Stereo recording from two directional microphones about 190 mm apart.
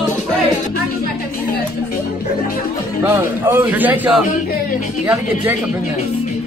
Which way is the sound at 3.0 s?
10° right (ahead or behind).